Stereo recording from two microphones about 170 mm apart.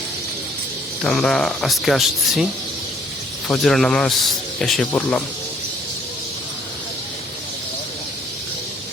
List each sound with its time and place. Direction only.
1.0 s speech: 5° left (ahead or behind)
3.6 s speech: 5° left (ahead or behind)